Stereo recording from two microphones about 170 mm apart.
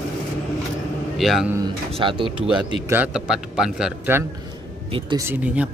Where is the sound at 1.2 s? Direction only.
Centre (ahead or behind).